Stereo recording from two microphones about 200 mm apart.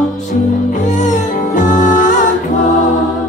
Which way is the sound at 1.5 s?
40° left (ahead or behind).